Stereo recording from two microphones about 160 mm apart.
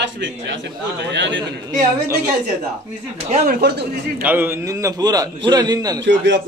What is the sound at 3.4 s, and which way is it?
Speech, 70° right (ahead or behind).